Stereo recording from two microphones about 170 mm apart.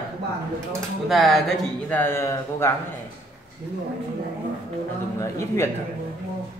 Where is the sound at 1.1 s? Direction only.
Centre (ahead or behind); by 2.7 s 15° left (ahead or behind).